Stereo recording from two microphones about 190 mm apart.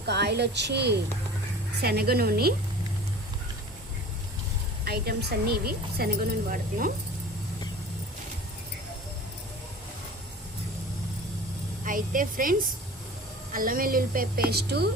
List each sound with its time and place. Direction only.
0.1 s a woman's voice: 60° right (ahead or behind)
4.9 s a woman's voice: 55° right (ahead or behind)
11.9 s a woman's voice: 45° right (ahead or behind)